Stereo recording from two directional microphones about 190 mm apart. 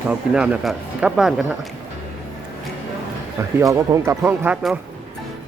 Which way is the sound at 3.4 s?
15° right (ahead or behind).